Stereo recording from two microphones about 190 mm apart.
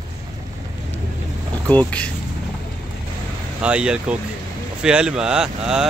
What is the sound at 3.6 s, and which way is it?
Speech, 5° right (ahead or behind).